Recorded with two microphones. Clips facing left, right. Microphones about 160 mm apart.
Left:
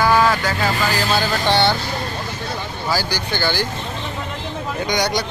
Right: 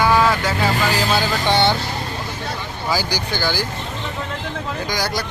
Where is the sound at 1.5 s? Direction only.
20° right (ahead or behind).